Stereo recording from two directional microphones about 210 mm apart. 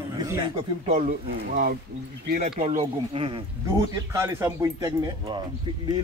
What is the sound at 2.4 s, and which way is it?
Speech, 30° right (ahead or behind).